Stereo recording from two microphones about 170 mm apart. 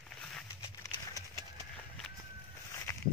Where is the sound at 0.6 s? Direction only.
20° left (ahead or behind).